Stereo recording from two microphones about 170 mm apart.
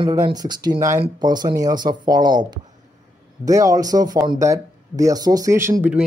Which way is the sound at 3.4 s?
20° right (ahead or behind).